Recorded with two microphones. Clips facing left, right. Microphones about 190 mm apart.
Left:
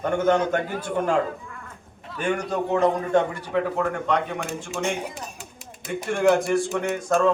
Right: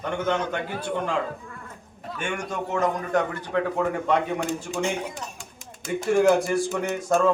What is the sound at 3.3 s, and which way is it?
Speech, 10° left (ahead or behind).